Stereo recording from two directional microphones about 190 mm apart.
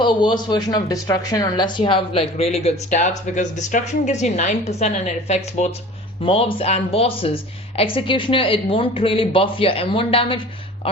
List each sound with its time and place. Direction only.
0.0 s a woman's voice: 25° left (ahead or behind)